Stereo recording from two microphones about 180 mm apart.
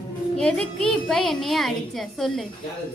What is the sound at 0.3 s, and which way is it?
A woman's voice, 5° left (ahead or behind).